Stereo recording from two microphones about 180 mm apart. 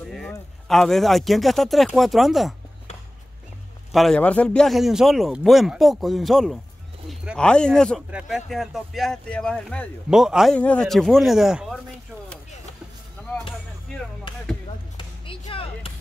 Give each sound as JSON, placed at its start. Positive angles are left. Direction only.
{"t": 0.0, "sound": "a sound", "side_deg": 0}
{"t": 0.7, "sound": "speech", "side_deg": 0}
{"t": 3.9, "sound": "speech", "side_deg": 0}
{"t": 15.0, "sound": "basketball bounce", "side_deg": 25}